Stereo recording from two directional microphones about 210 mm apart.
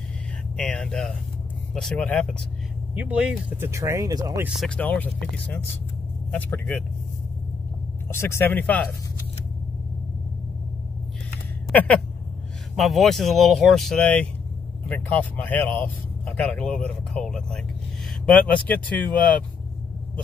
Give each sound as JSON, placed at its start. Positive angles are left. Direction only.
{"t": 0.6, "sound": "speech", "side_deg": 5}
{"t": 2.9, "sound": "speech", "side_deg": -5}
{"t": 4.5, "sound": "speech", "side_deg": 0}
{"t": 8.1, "sound": "speech", "side_deg": 10}
{"t": 11.7, "sound": "speech", "side_deg": 10}